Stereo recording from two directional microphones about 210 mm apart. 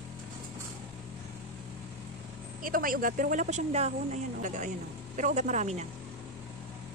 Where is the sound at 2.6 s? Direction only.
40° right (ahead or behind).